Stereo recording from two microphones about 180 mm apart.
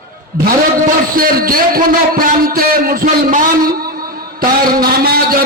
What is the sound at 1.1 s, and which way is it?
A man's voice, 55° right (ahead or behind).